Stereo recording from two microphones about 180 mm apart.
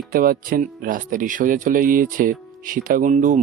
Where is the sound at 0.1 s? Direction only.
55° right (ahead or behind).